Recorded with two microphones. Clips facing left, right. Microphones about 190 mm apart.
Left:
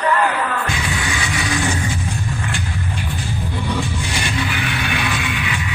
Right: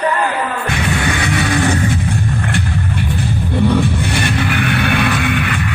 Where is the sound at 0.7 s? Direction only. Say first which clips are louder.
Right 6 dB; 60° right (ahead or behind).